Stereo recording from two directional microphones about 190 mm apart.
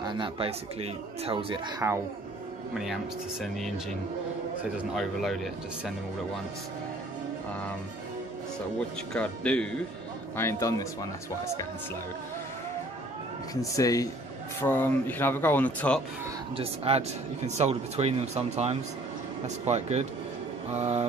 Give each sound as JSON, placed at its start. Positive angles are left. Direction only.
{"t": 0.0, "sound": "speech", "side_deg": -25}
{"t": 2.7, "sound": "speech", "side_deg": 0}
{"t": 9.1, "sound": "speech", "side_deg": 5}
{"t": 13.6, "sound": "speech", "side_deg": 20}
{"t": 16.5, "sound": "speech", "side_deg": -30}